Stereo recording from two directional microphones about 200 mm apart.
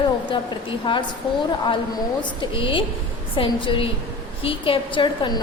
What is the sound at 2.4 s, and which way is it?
A woman's voice, 25° left (ahead or behind).